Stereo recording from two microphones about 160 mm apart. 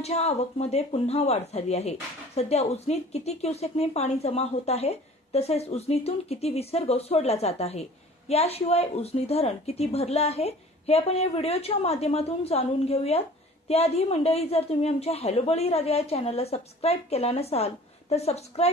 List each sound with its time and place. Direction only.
0.0 s a woman's voice: 40° left (ahead or behind)